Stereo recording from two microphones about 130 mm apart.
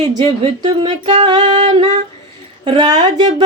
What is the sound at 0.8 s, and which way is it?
Female singing, 45° right (ahead or behind).